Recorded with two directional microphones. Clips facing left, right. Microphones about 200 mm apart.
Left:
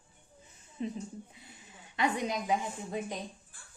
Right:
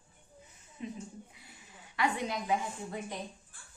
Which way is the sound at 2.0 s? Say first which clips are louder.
Left 1 dB; 15° left (ahead or behind).